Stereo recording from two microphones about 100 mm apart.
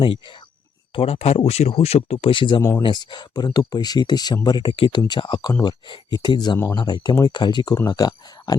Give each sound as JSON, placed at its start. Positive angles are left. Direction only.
{"t": 0.9, "sound": "speech", "side_deg": 75}
{"t": 2.6, "sound": "speech", "side_deg": 30}
{"t": 2.8, "sound": "speech", "side_deg": 50}